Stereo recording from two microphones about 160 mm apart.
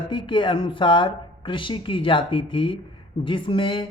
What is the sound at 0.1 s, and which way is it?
Speech, 30° left (ahead or behind).